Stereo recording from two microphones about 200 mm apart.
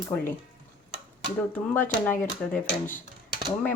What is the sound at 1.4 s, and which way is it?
Speech, 10° left (ahead or behind).